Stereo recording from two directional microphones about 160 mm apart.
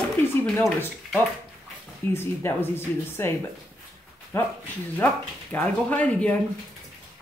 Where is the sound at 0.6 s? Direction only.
10° left (ahead or behind).